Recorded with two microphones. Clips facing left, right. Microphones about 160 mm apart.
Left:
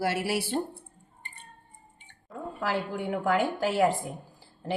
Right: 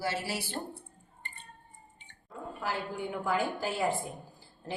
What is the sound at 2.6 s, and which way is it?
A woman's voice, 90° left.